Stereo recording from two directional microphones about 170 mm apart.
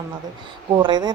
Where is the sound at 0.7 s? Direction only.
25° right (ahead or behind).